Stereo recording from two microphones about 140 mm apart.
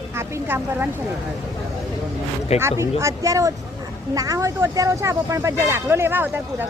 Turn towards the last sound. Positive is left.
turn(degrees=-15)  # may be behind; listen again after turning